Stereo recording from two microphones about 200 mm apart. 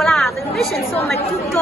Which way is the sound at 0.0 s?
Centre (ahead or behind).